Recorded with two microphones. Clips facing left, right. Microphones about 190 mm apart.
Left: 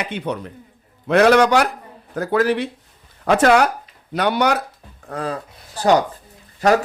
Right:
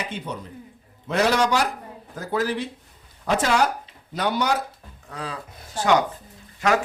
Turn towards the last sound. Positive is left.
turn(degrees=35)  # may be behind; listen again after turning